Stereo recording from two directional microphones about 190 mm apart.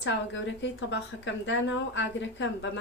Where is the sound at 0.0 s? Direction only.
70° left (ahead or behind).